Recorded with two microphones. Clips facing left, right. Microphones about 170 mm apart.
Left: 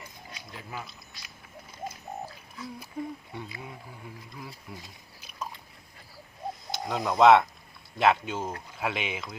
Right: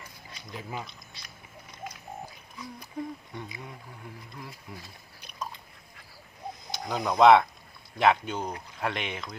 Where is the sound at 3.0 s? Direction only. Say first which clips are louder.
Even; 5° left (ahead or behind).